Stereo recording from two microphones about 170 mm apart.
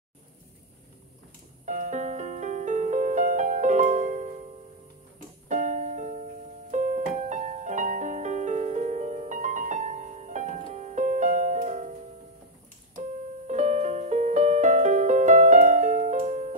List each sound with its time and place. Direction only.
1.7 s music: 45° right (ahead or behind)
5.5 s music: 45° right (ahead or behind)
13.5 s music: 40° right (ahead or behind)